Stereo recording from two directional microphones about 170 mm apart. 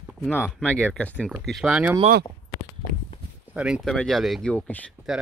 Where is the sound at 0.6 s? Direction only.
5° left (ahead or behind).